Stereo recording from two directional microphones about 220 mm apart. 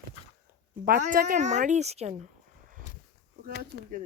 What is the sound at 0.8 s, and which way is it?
A woman's voice, 40° right (ahead or behind).